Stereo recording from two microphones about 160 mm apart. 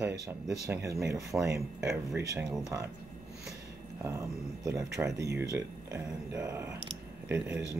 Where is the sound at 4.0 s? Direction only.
15° right (ahead or behind).